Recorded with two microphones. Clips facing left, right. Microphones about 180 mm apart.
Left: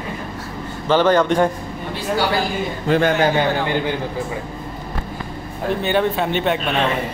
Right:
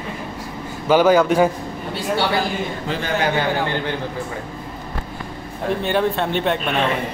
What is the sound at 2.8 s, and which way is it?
Speech, 55° left (ahead or behind).